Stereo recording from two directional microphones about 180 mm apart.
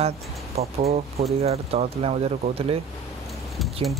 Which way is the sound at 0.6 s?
35° right (ahead or behind).